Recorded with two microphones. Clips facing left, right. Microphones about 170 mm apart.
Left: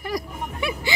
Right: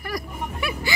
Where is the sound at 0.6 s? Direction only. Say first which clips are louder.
Left 3 dB; 20° left (ahead or behind).